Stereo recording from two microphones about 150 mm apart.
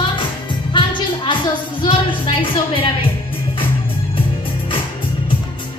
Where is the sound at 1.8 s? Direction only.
35° left (ahead or behind).